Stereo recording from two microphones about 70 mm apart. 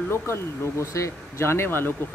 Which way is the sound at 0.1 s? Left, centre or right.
Left.